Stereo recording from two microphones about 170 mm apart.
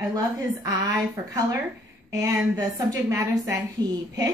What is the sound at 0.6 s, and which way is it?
A woman's voice, 20° right (ahead or behind).